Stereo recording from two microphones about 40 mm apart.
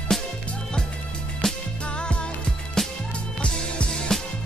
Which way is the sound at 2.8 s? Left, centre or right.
Centre.